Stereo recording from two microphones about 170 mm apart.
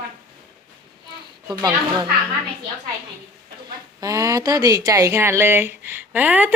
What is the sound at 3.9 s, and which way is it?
Speech, 20° right (ahead or behind).